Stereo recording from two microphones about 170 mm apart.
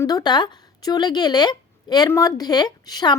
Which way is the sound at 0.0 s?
25° left (ahead or behind).